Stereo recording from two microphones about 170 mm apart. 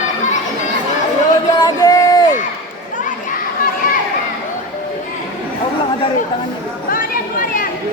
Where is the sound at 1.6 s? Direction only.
20° left (ahead or behind).